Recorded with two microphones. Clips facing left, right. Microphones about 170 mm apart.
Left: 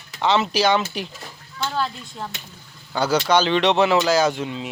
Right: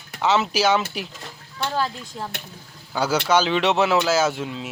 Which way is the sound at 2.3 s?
60° right (ahead or behind).